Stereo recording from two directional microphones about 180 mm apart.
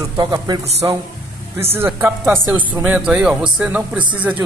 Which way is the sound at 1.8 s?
10° right (ahead or behind).